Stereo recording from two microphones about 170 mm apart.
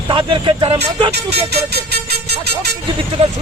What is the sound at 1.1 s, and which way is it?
Speech, 75° right (ahead or behind).